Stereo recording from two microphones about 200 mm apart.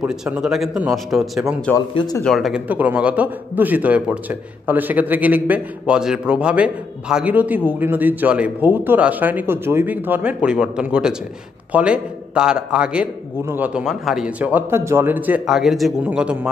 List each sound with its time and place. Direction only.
0.0 s a man's voice: 5° right (ahead or behind)
2.0 s speech: 20° left (ahead or behind)
2.2 s a man's voice: centre (ahead or behind)